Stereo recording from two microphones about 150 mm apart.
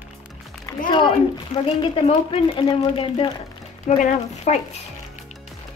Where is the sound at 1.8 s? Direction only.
35° left (ahead or behind).